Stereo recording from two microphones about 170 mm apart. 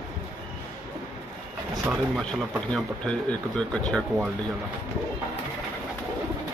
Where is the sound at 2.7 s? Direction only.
5° left (ahead or behind).